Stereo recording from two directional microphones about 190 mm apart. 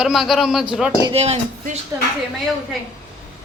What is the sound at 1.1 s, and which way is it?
Speech, 35° right (ahead or behind).